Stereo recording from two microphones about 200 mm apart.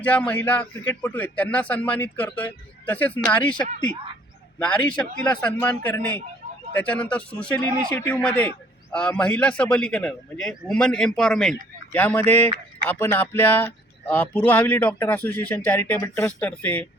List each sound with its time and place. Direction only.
0.0 s a man's voice: 5° left (ahead or behind)